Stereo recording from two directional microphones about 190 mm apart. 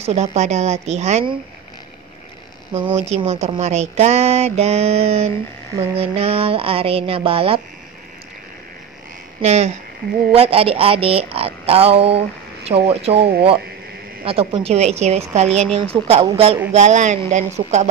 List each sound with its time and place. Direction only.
0.0 s speech: 35° right (ahead or behind)
2.7 s speech: 35° right (ahead or behind)
9.4 s speech: 35° right (ahead or behind)